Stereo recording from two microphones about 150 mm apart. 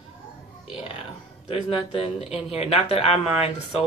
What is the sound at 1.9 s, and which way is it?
Speech, 40° left (ahead or behind).